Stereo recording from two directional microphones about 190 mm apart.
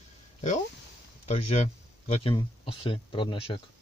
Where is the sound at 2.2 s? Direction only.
30° left (ahead or behind).